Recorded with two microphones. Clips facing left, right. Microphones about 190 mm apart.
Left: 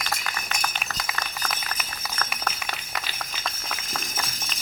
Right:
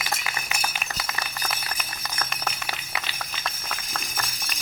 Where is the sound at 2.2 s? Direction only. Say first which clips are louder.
Left 1 dB; 15° right (ahead or behind).